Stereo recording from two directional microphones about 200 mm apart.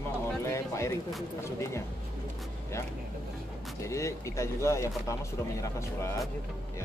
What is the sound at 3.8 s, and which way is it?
Speech, 15° left (ahead or behind).